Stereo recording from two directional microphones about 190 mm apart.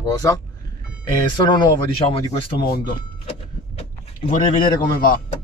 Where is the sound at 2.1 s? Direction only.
25° left (ahead or behind).